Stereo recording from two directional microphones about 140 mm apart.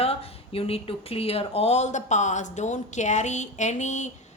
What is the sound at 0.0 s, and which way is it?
A woman's voice, 45° left (ahead or behind).